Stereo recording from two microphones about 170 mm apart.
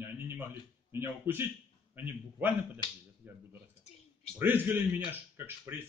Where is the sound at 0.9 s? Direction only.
15° right (ahead or behind).